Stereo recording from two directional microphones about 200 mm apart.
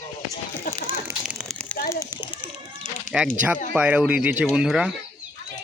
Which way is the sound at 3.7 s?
5° right (ahead or behind).